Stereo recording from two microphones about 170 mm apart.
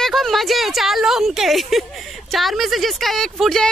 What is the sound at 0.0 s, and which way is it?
A woman's voice, centre (ahead or behind).